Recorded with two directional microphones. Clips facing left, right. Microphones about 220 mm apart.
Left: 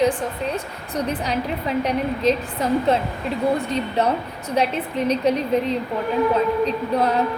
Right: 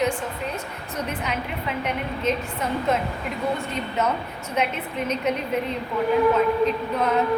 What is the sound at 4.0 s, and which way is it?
A woman's voice, 35° left (ahead or behind).